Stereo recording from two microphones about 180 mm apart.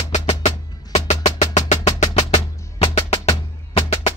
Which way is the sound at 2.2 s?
25° left (ahead or behind).